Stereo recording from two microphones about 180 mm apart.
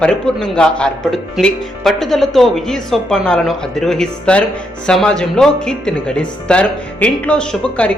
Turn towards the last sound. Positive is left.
turn(degrees=5)  # may be behind; listen again after turning